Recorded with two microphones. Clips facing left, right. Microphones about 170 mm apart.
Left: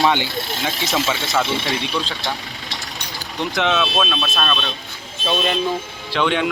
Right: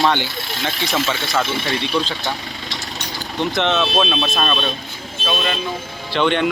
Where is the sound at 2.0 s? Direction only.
10° right (ahead or behind).